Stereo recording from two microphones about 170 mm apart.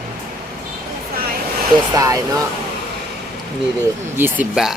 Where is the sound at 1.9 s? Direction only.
20° right (ahead or behind).